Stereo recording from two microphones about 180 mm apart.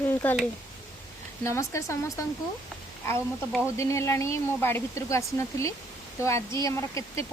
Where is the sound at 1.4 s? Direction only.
15° left (ahead or behind).